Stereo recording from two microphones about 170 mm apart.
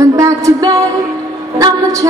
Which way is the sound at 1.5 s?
20° right (ahead or behind).